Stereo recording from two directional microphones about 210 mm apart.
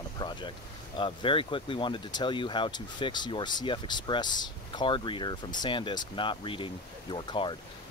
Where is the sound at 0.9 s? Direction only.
25° left (ahead or behind).